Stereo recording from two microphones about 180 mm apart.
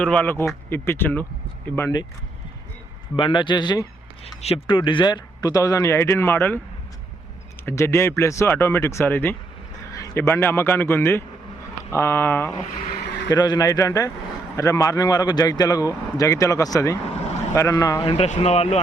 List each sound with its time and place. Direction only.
0.0 s speech: 10° left (ahead or behind)
3.2 s a man's voice: 25° left (ahead or behind); by 6.6 s 10° left (ahead or behind)
7.6 s speech: 15° left (ahead or behind)
13.2 s a man's voice: 20° left (ahead or behind)
18.1 s speech: 35° left (ahead or behind)